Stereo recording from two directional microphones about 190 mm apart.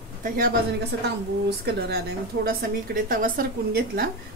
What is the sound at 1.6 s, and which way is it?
A woman's voice, 55° right (ahead or behind).